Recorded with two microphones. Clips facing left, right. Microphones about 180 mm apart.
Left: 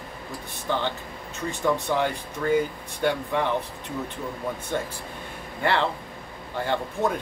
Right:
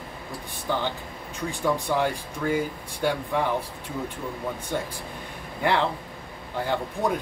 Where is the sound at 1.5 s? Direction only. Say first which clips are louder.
Left 1 dB; 10° right (ahead or behind).